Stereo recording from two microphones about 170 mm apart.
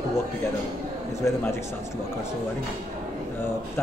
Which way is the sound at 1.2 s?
15° left (ahead or behind).